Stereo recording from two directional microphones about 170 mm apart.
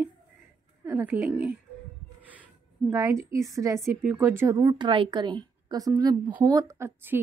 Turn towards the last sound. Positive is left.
turn(degrees=-15)  # may be behind; listen again after turning